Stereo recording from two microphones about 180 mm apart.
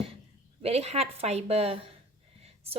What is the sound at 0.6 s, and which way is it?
A woman's voice, 35° right (ahead or behind).